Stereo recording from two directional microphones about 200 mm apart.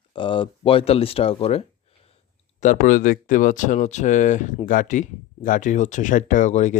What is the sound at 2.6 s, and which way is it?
Speech, 40° left (ahead or behind).